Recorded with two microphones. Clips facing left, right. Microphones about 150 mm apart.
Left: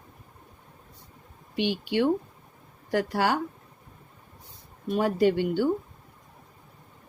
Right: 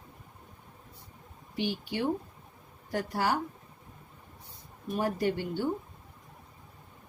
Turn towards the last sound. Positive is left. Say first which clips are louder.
# left 7 dB
turn(degrees=90)